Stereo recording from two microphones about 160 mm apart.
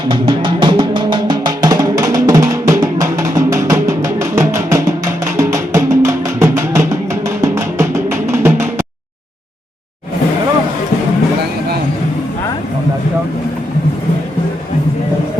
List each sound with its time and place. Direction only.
0.1 s music: 30° right (ahead or behind); by 8.6 s 15° right (ahead or behind)